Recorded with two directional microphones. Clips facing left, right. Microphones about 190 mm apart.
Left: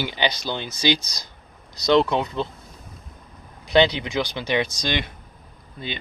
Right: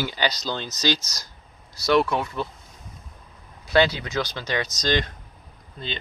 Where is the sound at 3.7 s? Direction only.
20° left (ahead or behind).